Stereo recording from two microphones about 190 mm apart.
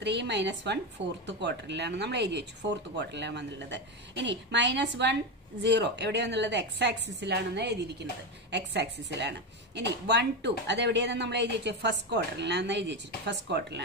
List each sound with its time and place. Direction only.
0.0 s a woman's voice: 65° right (ahead or behind)